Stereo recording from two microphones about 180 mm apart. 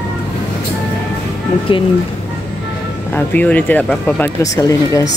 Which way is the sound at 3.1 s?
10° left (ahead or behind).